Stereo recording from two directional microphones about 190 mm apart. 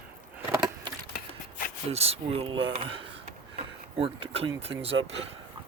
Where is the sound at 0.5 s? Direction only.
20° right (ahead or behind).